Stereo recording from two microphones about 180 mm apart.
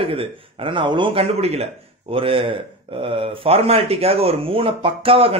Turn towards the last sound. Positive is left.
turn(degrees=-30)  # may be behind; listen again after turning